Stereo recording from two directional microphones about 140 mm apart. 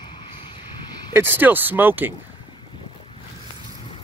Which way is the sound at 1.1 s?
15° right (ahead or behind).